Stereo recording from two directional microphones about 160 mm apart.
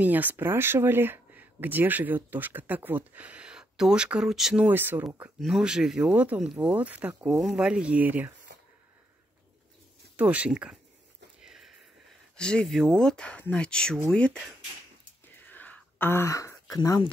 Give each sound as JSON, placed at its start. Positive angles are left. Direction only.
{"t": 0.0, "sound": "speech", "side_deg": -10}
{"t": 10.1, "sound": "speech", "side_deg": -10}
{"t": 11.4, "sound": "sniff", "side_deg": 0}
{"t": 12.4, "sound": "speech", "side_deg": 5}
{"t": 15.2, "sound": "throat clearing", "side_deg": 10}